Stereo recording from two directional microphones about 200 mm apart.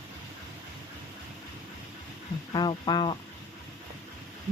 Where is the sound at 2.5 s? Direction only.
20° left (ahead or behind).